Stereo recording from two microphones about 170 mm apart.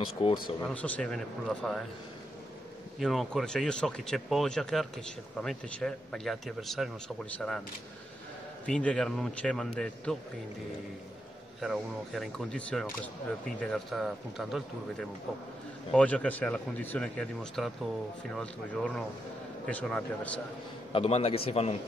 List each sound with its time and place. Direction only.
0.0 s speech: 30° left (ahead or behind)
0.7 s speech: 10° left (ahead or behind)
3.0 s speech: centre (ahead or behind)
8.6 s speech: 5° left (ahead or behind)
11.6 s speech: centre (ahead or behind)
20.9 s a man's voice: 35° left (ahead or behind)